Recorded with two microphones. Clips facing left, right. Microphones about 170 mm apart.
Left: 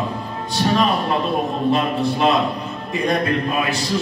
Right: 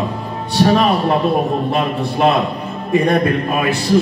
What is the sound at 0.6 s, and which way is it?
Speech, 55° right (ahead or behind).